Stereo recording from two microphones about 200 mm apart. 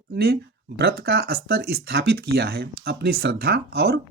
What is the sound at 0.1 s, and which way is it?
Speech, 50° right (ahead or behind).